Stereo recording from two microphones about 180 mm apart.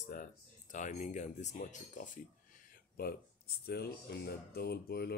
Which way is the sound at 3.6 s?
65° left (ahead or behind).